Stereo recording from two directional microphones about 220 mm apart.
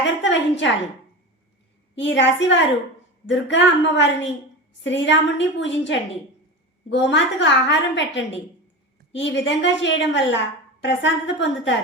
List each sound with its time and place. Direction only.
0.2 s a woman's voice: 55° left (ahead or behind)
2.1 s a woman's voice: 55° left (ahead or behind)